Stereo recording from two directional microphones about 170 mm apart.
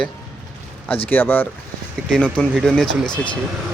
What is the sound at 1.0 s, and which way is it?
Speech, 10° left (ahead or behind).